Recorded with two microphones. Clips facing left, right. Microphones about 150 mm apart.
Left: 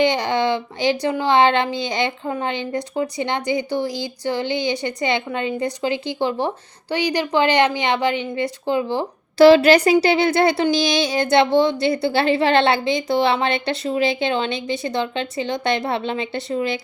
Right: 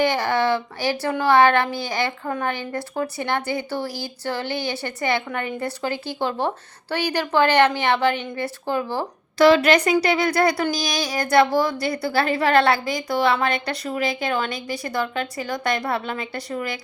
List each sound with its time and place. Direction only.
0.0 s a woman's voice: 20° left (ahead or behind)
9.4 s speech: 30° left (ahead or behind)